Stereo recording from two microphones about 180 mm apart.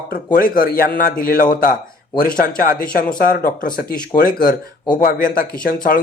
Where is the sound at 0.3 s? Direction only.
50° left (ahead or behind).